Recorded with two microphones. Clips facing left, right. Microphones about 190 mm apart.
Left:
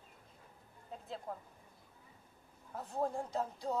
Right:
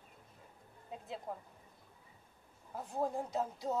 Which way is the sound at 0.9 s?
5° right (ahead or behind).